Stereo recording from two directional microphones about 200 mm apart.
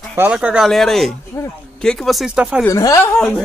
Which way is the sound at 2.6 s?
15° left (ahead or behind).